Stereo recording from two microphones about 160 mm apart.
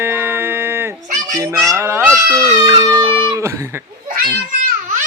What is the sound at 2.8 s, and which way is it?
Music, 25° right (ahead or behind).